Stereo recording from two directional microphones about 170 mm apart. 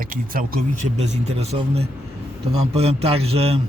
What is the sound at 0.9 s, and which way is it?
A man's voice, 40° right (ahead or behind).